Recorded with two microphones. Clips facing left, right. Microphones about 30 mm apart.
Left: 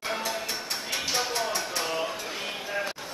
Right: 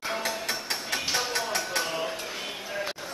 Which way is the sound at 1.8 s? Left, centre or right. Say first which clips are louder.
Left 1 dB; centre.